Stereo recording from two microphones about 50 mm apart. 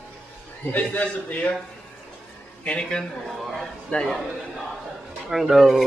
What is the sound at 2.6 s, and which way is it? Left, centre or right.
A man's voice, centre.